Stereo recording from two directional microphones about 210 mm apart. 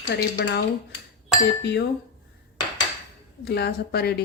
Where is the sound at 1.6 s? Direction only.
55° left (ahead or behind).